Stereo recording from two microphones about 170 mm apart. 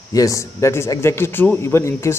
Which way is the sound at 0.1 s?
20° left (ahead or behind).